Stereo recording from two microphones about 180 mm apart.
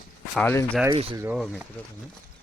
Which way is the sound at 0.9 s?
20° right (ahead or behind).